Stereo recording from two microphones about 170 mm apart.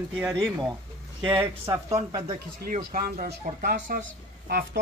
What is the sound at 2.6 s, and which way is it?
Speech, 55° right (ahead or behind).